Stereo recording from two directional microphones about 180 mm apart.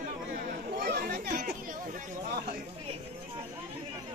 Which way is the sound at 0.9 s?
55° right (ahead or behind).